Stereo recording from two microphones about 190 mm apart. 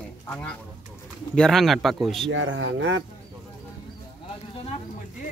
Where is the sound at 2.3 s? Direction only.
75° right (ahead or behind).